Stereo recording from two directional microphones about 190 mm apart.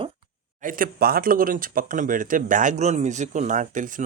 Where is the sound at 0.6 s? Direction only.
45° right (ahead or behind).